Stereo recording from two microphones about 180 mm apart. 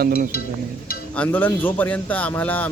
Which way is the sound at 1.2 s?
10° left (ahead or behind).